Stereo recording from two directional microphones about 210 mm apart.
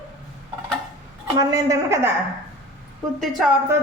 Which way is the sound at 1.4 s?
15° right (ahead or behind).